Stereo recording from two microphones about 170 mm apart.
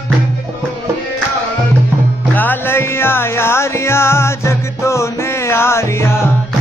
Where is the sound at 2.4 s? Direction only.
10° left (ahead or behind).